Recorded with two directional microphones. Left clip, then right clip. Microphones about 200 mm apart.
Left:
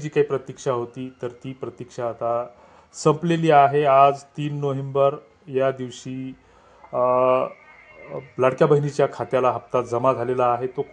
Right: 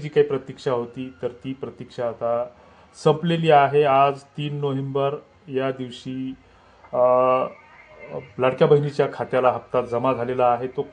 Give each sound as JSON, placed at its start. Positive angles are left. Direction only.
{"t": 0.1, "sound": "a man's voice", "side_deg": 35}
{"t": 6.9, "sound": "a man's voice", "side_deg": 40}